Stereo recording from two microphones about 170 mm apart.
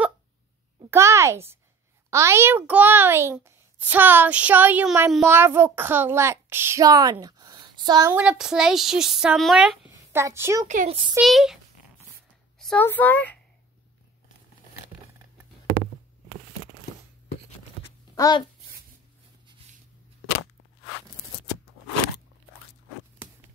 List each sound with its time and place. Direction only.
0.8 s a child's voice: 15° right (ahead or behind)
8.1 s speech: 5° right (ahead or behind)
9.8 s a woman's voice: 15° right (ahead or behind)
10.7 s a child's voice: 50° right (ahead or behind)
11.1 s speech: centre (ahead or behind)
18.1 s a sound: 20° left (ahead or behind)